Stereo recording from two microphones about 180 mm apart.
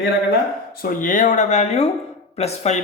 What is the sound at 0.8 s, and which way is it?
Speech, 50° left (ahead or behind).